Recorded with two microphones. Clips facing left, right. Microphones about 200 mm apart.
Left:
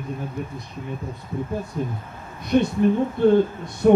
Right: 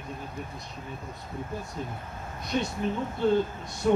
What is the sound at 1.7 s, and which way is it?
Speech, 55° left (ahead or behind).